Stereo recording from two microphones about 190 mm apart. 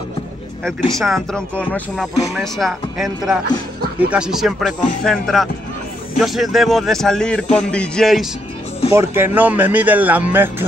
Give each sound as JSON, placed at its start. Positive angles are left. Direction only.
{"t": 0.7, "sound": "speech", "side_deg": 0}
{"t": 8.9, "sound": "speech", "side_deg": -10}